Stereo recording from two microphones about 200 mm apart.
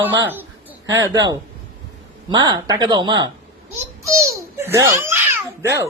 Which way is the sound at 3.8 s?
15° right (ahead or behind).